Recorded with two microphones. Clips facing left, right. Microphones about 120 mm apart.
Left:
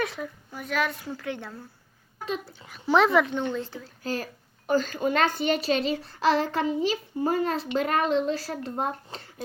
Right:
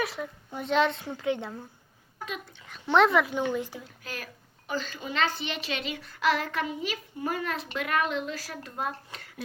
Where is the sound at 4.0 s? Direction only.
30° left (ahead or behind).